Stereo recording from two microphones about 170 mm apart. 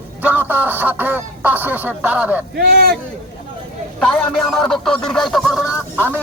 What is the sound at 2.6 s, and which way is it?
Speech, 60° right (ahead or behind).